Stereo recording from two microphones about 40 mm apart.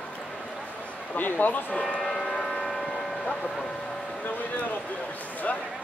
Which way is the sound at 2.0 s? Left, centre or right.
Centre.